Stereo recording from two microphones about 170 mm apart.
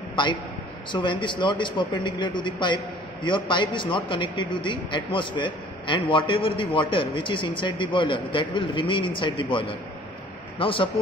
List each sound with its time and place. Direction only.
0.1 s a man's voice: 25° left (ahead or behind)